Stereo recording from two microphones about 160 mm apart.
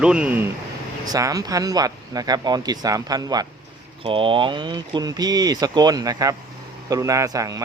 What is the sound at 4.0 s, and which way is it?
Speech, 35° right (ahead or behind).